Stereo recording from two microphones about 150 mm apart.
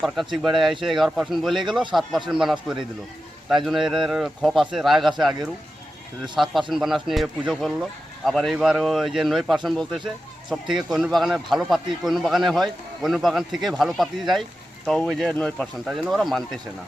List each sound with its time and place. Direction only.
0.3 s speech: 30° right (ahead or behind)
0.9 s a man's voice: centre (ahead or behind)